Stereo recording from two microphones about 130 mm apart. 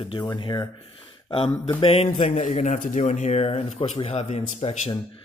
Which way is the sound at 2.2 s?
70° left (ahead or behind).